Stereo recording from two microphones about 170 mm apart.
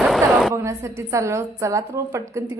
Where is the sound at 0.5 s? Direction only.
15° right (ahead or behind).